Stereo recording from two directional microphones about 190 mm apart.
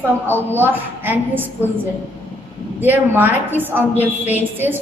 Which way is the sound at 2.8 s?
10° right (ahead or behind).